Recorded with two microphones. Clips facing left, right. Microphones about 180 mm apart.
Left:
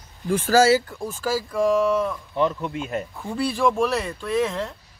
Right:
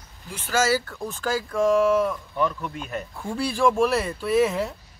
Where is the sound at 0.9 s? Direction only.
10° left (ahead or behind).